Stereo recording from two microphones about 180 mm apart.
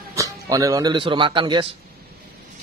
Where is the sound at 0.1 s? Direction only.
20° right (ahead or behind).